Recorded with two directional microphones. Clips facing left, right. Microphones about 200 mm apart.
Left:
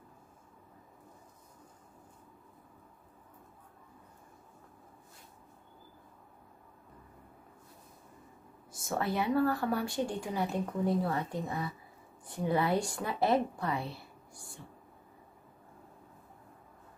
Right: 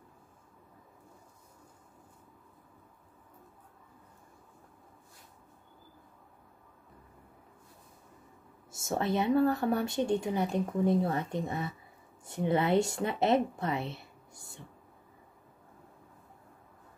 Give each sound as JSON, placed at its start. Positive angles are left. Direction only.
{"t": 8.7, "sound": "speech", "side_deg": -25}